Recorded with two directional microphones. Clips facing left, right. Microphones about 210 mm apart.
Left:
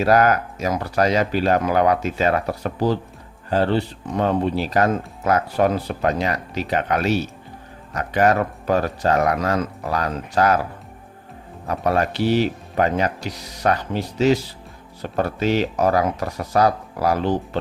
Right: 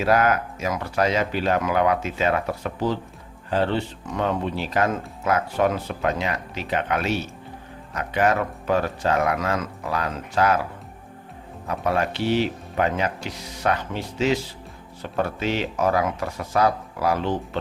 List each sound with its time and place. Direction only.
0.0 s speech: 40° left (ahead or behind)
11.7 s speech: 40° left (ahead or behind)